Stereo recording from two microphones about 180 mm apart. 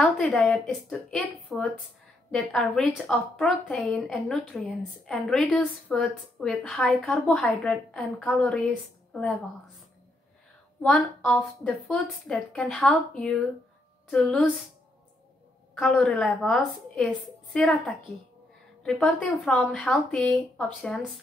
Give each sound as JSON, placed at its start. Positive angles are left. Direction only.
{"t": 0.0, "sound": "a woman's voice", "side_deg": 5}
{"t": 10.8, "sound": "a woman's voice", "side_deg": 5}
{"t": 15.7, "sound": "a woman's voice", "side_deg": 5}